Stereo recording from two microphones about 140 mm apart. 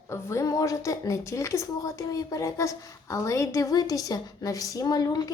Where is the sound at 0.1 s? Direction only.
20° left (ahead or behind).